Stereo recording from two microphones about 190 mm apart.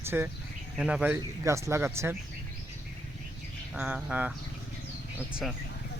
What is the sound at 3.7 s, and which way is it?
Speech, 5° right (ahead or behind).